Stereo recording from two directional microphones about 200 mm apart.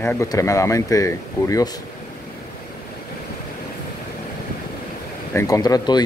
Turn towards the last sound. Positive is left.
turn(degrees=20)  # may be behind; listen again after turning